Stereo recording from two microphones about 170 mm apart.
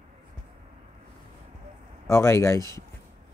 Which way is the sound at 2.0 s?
15° left (ahead or behind).